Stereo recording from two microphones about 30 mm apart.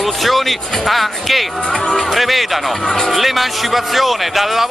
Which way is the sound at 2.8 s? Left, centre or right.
Centre.